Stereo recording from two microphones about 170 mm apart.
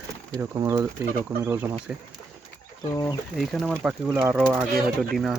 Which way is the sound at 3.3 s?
Centre (ahead or behind).